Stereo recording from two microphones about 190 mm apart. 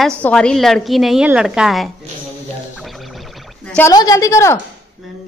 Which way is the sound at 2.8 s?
Centre (ahead or behind).